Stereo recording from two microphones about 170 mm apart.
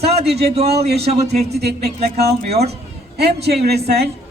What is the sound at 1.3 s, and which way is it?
Speech, 75° right (ahead or behind).